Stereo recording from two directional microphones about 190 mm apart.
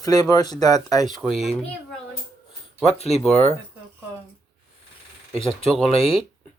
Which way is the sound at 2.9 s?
35° left (ahead or behind).